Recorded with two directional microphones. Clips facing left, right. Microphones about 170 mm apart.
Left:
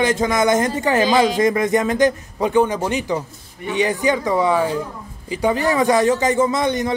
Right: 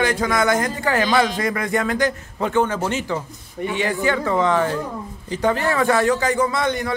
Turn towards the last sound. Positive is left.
turn(degrees=20)  # may be behind; listen again after turning